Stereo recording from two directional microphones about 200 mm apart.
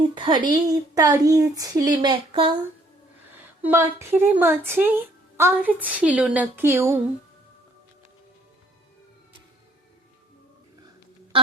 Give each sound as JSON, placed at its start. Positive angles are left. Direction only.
{"t": 0.0, "sound": "speech", "side_deg": -25}
{"t": 3.4, "sound": "speech", "side_deg": -10}